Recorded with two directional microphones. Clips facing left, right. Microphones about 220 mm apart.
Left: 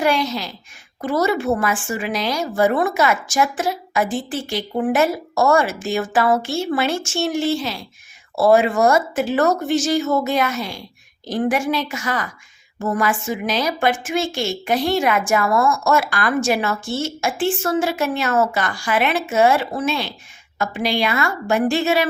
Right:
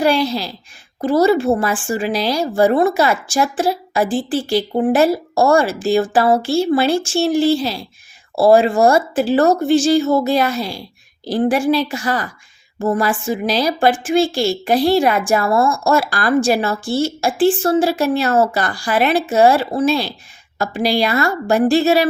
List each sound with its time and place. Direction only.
0.0 s a woman's voice: 35° right (ahead or behind)